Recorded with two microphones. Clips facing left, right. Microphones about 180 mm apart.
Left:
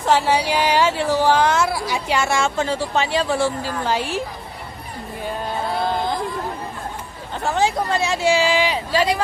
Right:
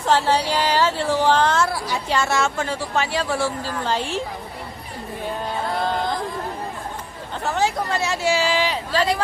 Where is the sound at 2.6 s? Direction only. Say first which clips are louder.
Left 3 dB; 25° left (ahead or behind); by 4.2 s 10° left (ahead or behind).